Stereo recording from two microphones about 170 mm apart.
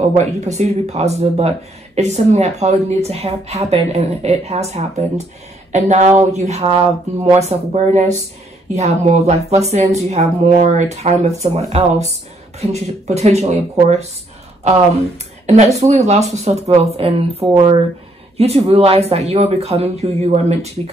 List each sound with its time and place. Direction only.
0.2 s speech: 40° right (ahead or behind)
15.4 s speech: 40° right (ahead or behind)
18.4 s speech: 35° right (ahead or behind)